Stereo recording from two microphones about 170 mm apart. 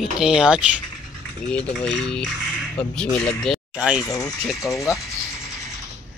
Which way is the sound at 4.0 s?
20° left (ahead or behind).